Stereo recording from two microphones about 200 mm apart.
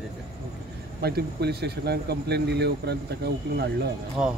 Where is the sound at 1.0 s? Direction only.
55° right (ahead or behind).